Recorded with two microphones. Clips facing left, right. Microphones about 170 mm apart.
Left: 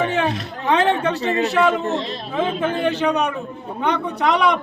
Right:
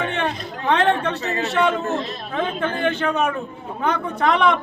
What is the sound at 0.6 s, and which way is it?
A man's voice, centre (ahead or behind).